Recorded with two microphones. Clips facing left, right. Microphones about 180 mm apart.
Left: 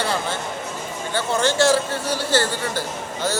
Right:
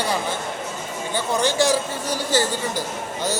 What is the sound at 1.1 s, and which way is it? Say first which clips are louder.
A man's voice: left 1 dB; 15° right (ahead or behind).